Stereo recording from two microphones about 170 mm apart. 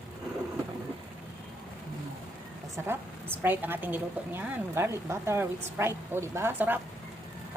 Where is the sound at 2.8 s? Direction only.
15° right (ahead or behind).